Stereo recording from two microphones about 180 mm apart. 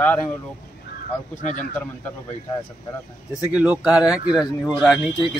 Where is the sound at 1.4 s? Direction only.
45° left (ahead or behind).